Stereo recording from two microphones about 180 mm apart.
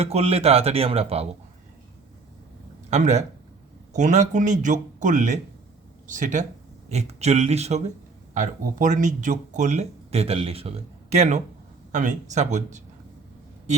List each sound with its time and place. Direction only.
0.0 s speech: 35° right (ahead or behind)
2.9 s speech: 40° right (ahead or behind)